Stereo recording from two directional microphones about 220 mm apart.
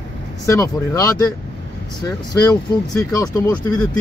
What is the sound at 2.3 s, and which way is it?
Speech, 15° left (ahead or behind).